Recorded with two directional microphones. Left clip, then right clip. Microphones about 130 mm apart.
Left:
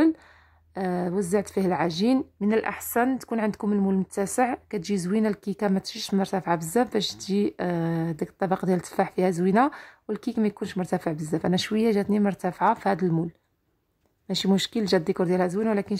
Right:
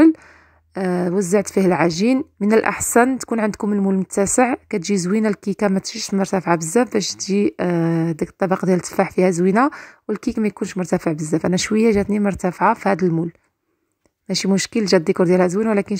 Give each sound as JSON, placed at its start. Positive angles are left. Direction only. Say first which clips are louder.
{"t": 0.7, "sound": "speech", "louder": "right 7 dB", "side_deg": -30}
{"t": 14.2, "sound": "speech", "louder": "right 5 dB", "side_deg": -30}